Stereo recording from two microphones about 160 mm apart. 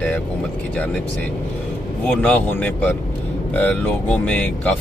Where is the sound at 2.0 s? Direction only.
5° left (ahead or behind).